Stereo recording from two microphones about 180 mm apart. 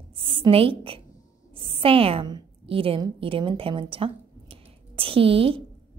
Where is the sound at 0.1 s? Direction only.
30° right (ahead or behind).